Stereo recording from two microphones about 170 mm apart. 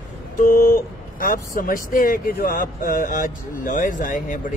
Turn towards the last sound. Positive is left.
turn(degrees=50)  # may be behind; listen again after turning